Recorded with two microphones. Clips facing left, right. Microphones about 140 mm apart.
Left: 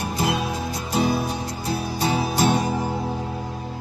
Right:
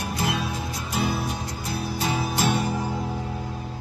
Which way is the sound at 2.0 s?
30° left (ahead or behind).